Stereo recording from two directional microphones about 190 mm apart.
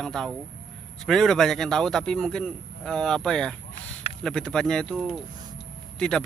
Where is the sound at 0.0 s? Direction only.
5° left (ahead or behind).